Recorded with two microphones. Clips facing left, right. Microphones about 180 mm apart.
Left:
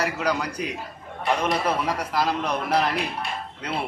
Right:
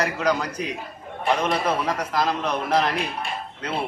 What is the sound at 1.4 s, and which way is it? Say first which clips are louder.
A man's voice: right 1 dB; 10° left (ahead or behind).